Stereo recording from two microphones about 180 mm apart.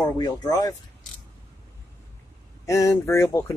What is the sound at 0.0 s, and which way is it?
Speech, 20° left (ahead or behind).